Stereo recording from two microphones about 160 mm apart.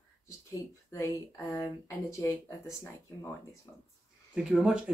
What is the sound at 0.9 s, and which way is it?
Speech, 20° left (ahead or behind).